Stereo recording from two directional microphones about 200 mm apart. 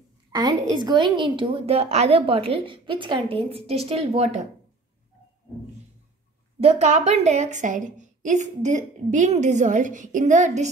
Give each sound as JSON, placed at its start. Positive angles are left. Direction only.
{"t": 0.3, "sound": "a woman's voice", "side_deg": -20}
{"t": 6.6, "sound": "a woman's voice", "side_deg": -35}